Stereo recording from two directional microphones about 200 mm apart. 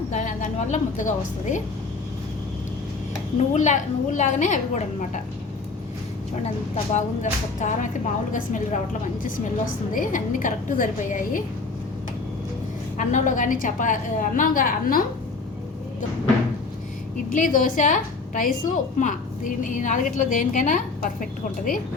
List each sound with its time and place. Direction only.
0.1 s a woman's voice: 40° left (ahead or behind)
3.3 s a woman's voice: 35° left (ahead or behind)
6.9 s a woman's voice: 35° left (ahead or behind)
9.9 s a woman's voice: 40° left (ahead or behind)
13.0 s a woman's voice: 40° left (ahead or behind)
17.3 s a woman's voice: 40° left (ahead or behind)